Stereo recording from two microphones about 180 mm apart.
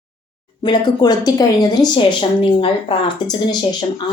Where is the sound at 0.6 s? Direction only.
25° left (ahead or behind).